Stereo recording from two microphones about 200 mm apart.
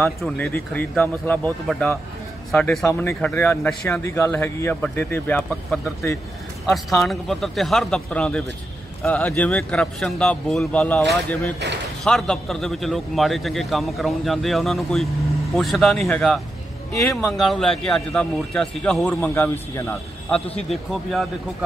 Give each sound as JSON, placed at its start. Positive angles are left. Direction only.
{"t": 0.0, "sound": "speech", "side_deg": 10}
{"t": 16.9, "sound": "speech", "side_deg": 15}
{"t": 17.2, "sound": "speech", "side_deg": 0}